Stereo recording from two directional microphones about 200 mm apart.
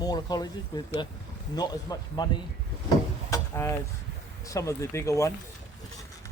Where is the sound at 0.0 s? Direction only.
20° left (ahead or behind).